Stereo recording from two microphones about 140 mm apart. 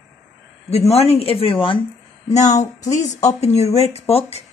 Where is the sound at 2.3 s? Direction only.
55° left (ahead or behind).